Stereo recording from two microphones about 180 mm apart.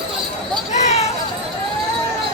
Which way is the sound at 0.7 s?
40° left (ahead or behind).